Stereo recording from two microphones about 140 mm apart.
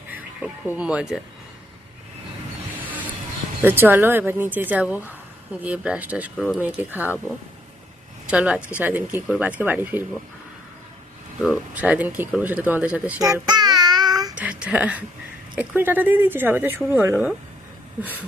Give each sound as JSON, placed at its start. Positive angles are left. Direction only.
{"t": 0.1, "sound": "speech", "side_deg": -10}
{"t": 2.8, "sound": "vehicle", "side_deg": -10}
{"t": 3.6, "sound": "speech", "side_deg": -15}
{"t": 6.3, "sound": "speech", "side_deg": 5}
{"t": 6.6, "sound": "speech", "side_deg": -10}
{"t": 8.3, "sound": "speech", "side_deg": -10}
{"t": 11.7, "sound": "speech", "side_deg": -10}
{"t": 13.2, "sound": "child singing", "side_deg": -25}
{"t": 14.3, "sound": "speech", "side_deg": -10}